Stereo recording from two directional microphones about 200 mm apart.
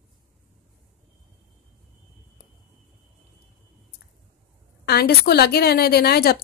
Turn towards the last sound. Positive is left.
turn(degrees=50)  # may be behind; listen again after turning